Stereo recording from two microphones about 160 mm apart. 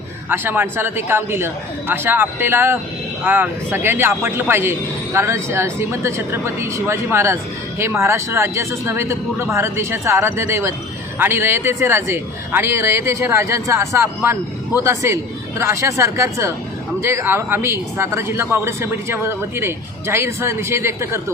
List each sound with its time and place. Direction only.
0.3 s speech: 10° right (ahead or behind)